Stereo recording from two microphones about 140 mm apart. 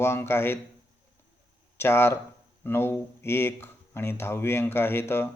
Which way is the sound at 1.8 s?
15° left (ahead or behind).